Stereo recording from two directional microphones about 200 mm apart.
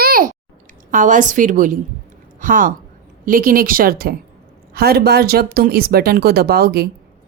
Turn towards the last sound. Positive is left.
turn(degrees=-50)  # may be behind; listen again after turning